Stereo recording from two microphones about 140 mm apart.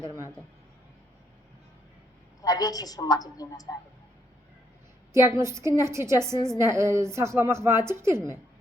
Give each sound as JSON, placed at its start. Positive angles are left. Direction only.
{"t": 0.0, "sound": "a woman's voice", "side_deg": -20}
{"t": 2.4, "sound": "a woman's voice", "side_deg": 25}
{"t": 5.1, "sound": "a woman's voice", "side_deg": -20}